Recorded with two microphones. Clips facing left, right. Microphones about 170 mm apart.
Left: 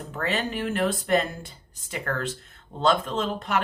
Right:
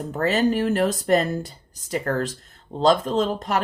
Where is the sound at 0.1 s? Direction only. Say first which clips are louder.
Right 8 dB; 40° right (ahead or behind).